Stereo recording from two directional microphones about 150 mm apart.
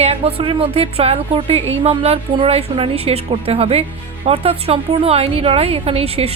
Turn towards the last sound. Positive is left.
turn(degrees=-40)  # may be behind; listen again after turning